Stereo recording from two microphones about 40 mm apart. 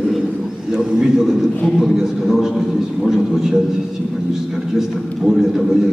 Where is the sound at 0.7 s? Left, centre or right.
Centre.